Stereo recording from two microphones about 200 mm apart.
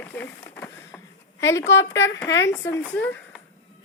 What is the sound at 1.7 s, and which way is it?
Speech, 65° left (ahead or behind).